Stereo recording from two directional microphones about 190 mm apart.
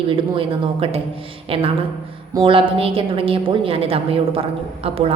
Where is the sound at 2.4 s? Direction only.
30° right (ahead or behind).